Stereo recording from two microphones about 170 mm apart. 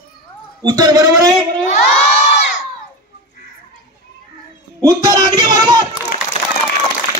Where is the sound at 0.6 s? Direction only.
25° right (ahead or behind).